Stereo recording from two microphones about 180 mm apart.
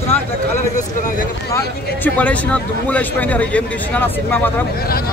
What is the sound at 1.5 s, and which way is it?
Speech, 10° left (ahead or behind).